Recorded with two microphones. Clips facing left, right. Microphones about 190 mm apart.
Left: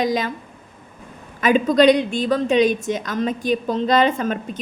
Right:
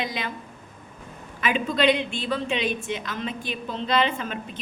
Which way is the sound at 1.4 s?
40° left (ahead or behind).